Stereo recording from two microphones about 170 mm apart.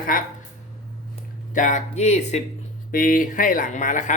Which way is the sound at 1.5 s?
50° left (ahead or behind).